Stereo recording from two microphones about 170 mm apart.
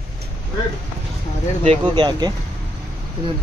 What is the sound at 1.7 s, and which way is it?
Speech, 30° right (ahead or behind).